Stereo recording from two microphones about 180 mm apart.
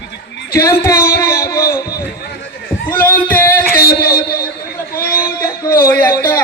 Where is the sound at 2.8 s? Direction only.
10° left (ahead or behind).